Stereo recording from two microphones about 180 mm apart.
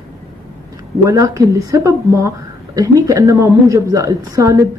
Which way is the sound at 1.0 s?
20° right (ahead or behind).